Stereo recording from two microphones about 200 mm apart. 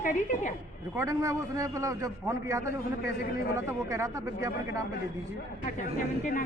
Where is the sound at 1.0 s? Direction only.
15° right (ahead or behind).